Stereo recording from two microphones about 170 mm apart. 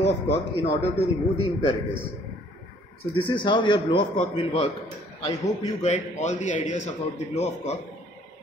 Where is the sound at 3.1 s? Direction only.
30° left (ahead or behind).